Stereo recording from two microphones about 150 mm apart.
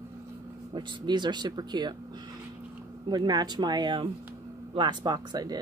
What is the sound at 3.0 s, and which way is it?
Speech, 30° right (ahead or behind).